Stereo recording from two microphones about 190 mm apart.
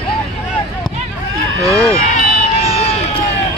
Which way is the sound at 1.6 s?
15° right (ahead or behind).